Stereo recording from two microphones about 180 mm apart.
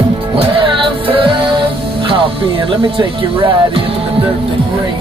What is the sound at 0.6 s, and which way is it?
Music, 30° right (ahead or behind).